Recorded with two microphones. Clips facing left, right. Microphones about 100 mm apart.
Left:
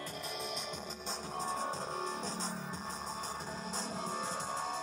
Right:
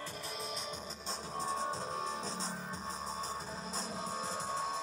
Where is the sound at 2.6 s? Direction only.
40° right (ahead or behind).